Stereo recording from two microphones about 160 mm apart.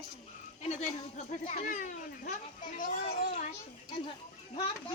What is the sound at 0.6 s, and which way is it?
Speech, 45° left (ahead or behind).